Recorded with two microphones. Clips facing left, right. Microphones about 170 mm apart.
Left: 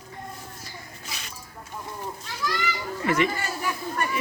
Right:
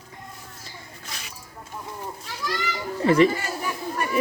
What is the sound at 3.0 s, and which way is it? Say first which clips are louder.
Speech: right 7 dB; 30° right (ahead or behind).